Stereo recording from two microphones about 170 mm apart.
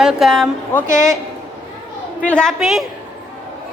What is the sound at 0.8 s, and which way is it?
Speech, 45° left (ahead or behind).